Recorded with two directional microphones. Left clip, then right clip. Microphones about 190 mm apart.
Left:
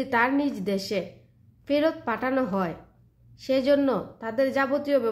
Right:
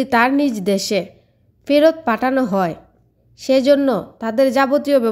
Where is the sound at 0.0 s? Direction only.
40° right (ahead or behind).